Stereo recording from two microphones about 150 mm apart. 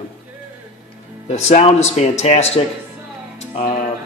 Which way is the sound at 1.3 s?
50° left (ahead or behind).